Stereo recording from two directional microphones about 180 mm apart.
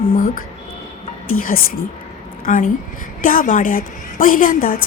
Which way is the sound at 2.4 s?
50° left (ahead or behind).